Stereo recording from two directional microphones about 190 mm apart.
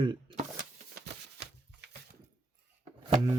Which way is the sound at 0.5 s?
60° right (ahead or behind).